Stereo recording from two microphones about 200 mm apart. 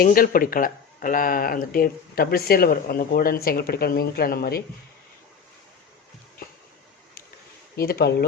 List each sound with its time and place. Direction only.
0.0 s speech: 45° left (ahead or behind)
7.8 s speech: 50° left (ahead or behind)